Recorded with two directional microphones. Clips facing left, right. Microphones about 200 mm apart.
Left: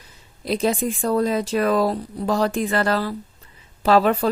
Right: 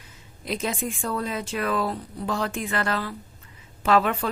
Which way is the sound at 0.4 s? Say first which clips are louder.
Left 7 dB; 35° left (ahead or behind).